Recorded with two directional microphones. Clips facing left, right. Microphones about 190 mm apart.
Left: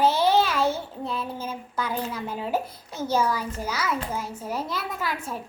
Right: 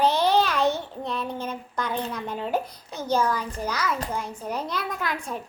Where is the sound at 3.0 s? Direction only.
10° left (ahead or behind).